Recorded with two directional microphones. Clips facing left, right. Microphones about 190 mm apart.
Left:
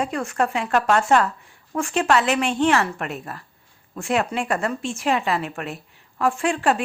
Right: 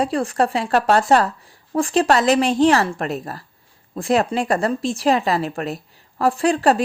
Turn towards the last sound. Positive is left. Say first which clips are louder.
# right 5 dB
turn(degrees=-35)  # may be behind; listen again after turning